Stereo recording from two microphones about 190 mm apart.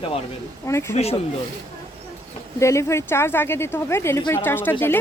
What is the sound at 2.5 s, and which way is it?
Speech, 15° left (ahead or behind).